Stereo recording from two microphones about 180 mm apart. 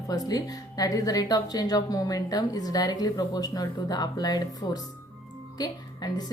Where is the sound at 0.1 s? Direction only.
20° left (ahead or behind).